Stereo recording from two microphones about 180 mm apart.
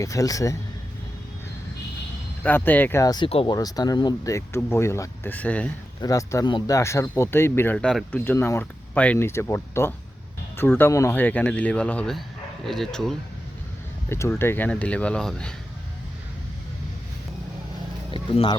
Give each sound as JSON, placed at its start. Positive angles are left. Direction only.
{"t": 0.0, "sound": "speech", "side_deg": 20}
{"t": 2.4, "sound": "speech", "side_deg": 10}
{"t": 6.0, "sound": "speech", "side_deg": 20}
{"t": 14.1, "sound": "speech", "side_deg": 15}
{"t": 18.1, "sound": "speech", "side_deg": 30}